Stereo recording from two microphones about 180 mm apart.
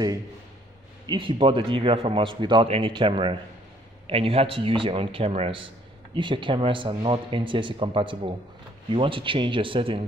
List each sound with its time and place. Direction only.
1.0 s a man's voice: 30° right (ahead or behind)